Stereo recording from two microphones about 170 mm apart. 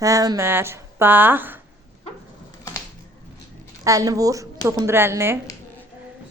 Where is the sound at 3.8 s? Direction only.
20° right (ahead or behind).